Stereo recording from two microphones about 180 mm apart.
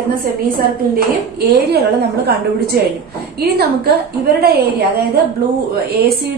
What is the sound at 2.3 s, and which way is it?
Speech, 65° right (ahead or behind).